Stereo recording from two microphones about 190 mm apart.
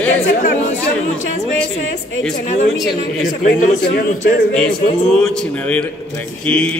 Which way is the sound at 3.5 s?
50° left (ahead or behind).